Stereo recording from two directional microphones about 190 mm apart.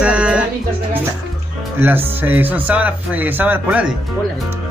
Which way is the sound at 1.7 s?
10° right (ahead or behind).